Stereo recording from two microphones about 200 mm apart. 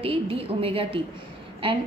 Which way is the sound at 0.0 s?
25° right (ahead or behind).